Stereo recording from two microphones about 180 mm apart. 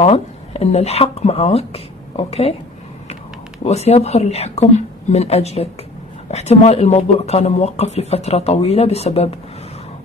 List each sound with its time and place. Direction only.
0.0 s speech: 35° left (ahead or behind)
3.6 s speech: 35° left (ahead or behind)